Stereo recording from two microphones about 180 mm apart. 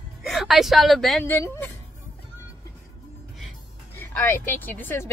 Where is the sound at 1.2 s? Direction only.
10° left (ahead or behind).